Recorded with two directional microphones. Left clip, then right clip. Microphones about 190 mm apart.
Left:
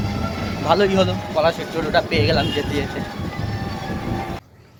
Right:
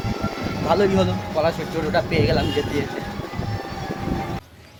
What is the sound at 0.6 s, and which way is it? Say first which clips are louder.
Speech: left 2 dB; 10° right (ahead or behind).